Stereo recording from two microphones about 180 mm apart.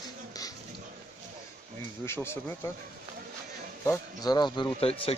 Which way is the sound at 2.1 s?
15° left (ahead or behind).